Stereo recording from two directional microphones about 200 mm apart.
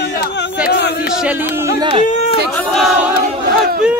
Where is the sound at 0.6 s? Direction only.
55° left (ahead or behind).